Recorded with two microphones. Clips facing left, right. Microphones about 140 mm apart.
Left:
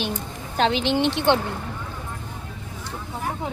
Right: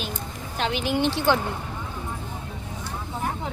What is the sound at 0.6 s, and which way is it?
Speech, 30° left (ahead or behind).